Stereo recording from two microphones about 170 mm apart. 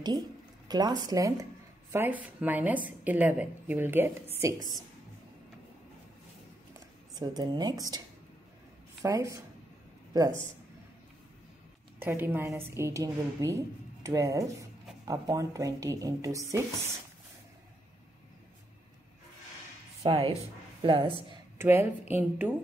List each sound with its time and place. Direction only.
0.7 s speech: 25° right (ahead or behind)
7.2 s speech: 25° right (ahead or behind)
9.0 s speech: 20° right (ahead or behind)
12.0 s speech: 15° right (ahead or behind)
20.0 s speech: 35° right (ahead or behind)
21.5 s speech: 15° right (ahead or behind)